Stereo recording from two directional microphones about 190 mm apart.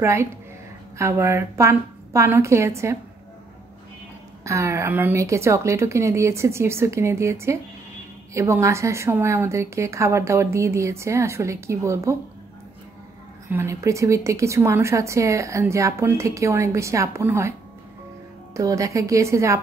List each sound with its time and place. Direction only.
0.0 s a woman's voice: 15° right (ahead or behind)
4.5 s a woman's voice: 15° right (ahead or behind)
13.5 s a woman's voice: 15° right (ahead or behind)